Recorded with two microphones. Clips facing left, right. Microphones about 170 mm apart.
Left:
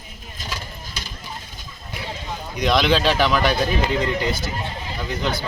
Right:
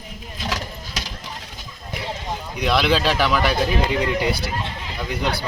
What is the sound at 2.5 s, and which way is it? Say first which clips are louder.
Speech: left 1 dB; 5° right (ahead or behind).